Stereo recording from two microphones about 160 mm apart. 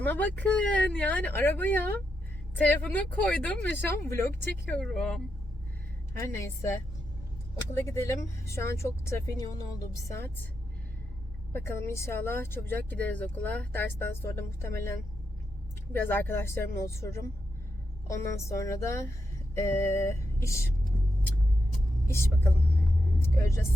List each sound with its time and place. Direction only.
0.0 s speech: 10° left (ahead or behind)
4.8 s speech: 5° left (ahead or behind)
6.1 s speech: 20° left (ahead or behind)
11.5 s speech: 15° left (ahead or behind)
22.0 s speech: 15° left (ahead or behind)